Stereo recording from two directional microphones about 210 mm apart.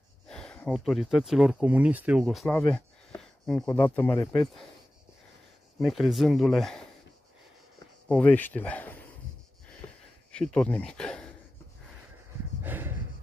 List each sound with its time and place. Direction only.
0.3 s speech: 5° left (ahead or behind)
5.8 s speech: centre (ahead or behind)
8.1 s speech: 5° left (ahead or behind)
10.3 s speech: 5° left (ahead or behind)
12.6 s snort: 10° right (ahead or behind)